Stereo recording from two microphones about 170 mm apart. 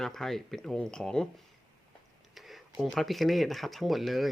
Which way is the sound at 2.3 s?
Centre (ahead or behind).